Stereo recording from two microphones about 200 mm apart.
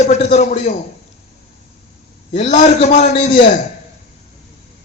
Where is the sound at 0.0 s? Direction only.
35° left (ahead or behind).